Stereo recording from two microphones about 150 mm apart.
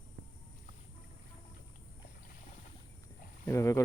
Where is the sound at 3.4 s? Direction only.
20° left (ahead or behind).